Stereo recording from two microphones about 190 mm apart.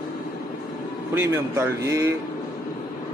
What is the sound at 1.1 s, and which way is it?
Speech, 15° right (ahead or behind).